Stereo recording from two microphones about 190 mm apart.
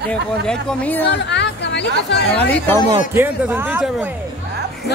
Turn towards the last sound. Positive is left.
turn(degrees=-10)  # may be behind; listen again after turning